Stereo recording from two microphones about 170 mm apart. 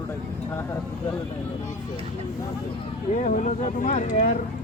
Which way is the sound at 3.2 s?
50° left (ahead or behind).